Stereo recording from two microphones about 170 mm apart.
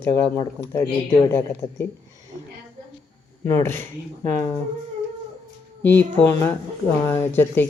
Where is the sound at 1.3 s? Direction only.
10° left (ahead or behind).